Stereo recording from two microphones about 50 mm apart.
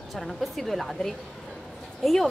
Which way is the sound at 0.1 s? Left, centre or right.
Centre.